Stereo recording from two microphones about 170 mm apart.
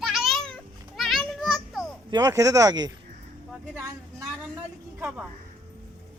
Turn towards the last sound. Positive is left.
turn(degrees=-10)  # may be behind; listen again after turning